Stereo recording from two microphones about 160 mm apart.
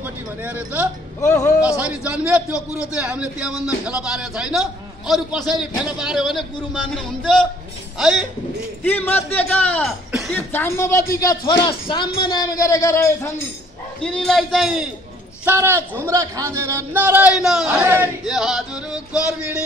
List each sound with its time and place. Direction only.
0.0 s speech: 10° right (ahead or behind)
1.2 s speech: 20° left (ahead or behind)
1.8 s a man's voice: 5° right (ahead or behind)
8.8 s a man's voice: 10° left (ahead or behind)
14.0 s a man's voice: 5° left (ahead or behind)
15.4 s a man's voice: 15° right (ahead or behind)
17.6 s a man's voice: 15° right (ahead or behind)
18.3 s a man's voice: centre (ahead or behind)